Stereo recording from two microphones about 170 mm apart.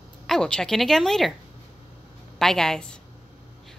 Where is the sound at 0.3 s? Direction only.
5° left (ahead or behind).